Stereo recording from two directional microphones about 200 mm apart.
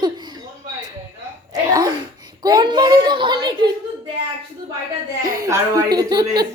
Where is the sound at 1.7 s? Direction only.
20° right (ahead or behind).